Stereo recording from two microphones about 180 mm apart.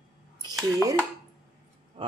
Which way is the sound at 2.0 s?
30° right (ahead or behind).